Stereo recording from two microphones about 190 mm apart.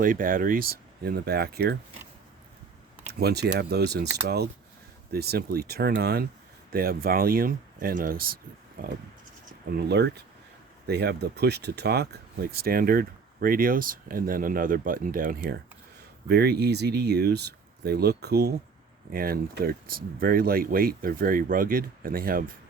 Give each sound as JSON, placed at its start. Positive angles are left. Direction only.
{"t": 0.0, "sound": "speech", "side_deg": -45}
{"t": 3.1, "sound": "speech", "side_deg": -55}
{"t": 5.1, "sound": "speech", "side_deg": -55}
{"t": 9.7, "sound": "speech", "side_deg": -60}
{"t": 16.3, "sound": "speech", "side_deg": -60}